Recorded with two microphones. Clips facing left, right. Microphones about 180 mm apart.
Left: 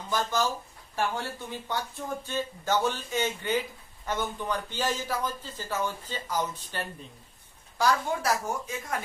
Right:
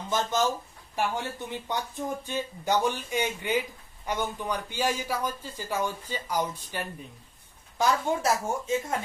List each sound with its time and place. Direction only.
0.1 s a woman's voice: 20° right (ahead or behind)
7.7 s a woman's voice: 20° right (ahead or behind)